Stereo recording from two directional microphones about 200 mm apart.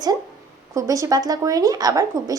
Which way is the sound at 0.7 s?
15° right (ahead or behind).